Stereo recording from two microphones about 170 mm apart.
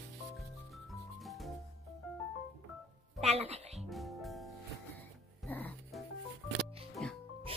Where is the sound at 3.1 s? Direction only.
40° right (ahead or behind).